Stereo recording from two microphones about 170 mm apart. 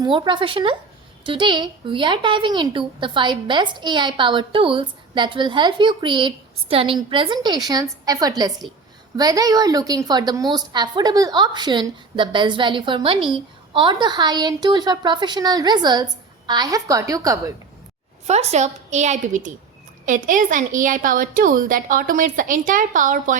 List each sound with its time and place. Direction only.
0.0 s a woman's voice: 25° right (ahead or behind)
18.3 s a woman's voice: 40° right (ahead or behind)